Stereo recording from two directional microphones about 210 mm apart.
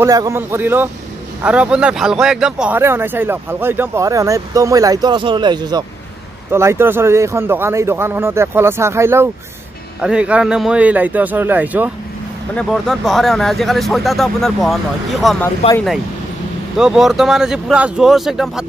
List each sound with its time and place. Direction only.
0.0 s speech: 15° right (ahead or behind)
15.6 s speech: 30° left (ahead or behind)
16.7 s speech: centre (ahead or behind)